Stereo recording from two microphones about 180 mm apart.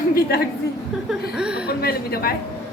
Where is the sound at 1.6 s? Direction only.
60° left (ahead or behind).